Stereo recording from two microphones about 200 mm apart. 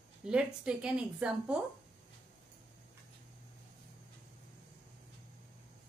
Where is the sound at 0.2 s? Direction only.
5° right (ahead or behind).